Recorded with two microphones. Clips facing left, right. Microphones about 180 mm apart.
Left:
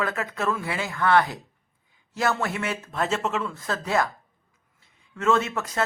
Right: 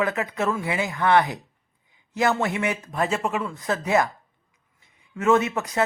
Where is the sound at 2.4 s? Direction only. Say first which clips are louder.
Right 3 dB; 15° right (ahead or behind).